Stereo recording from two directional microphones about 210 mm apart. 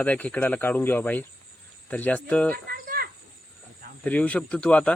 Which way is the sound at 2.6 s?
45° right (ahead or behind).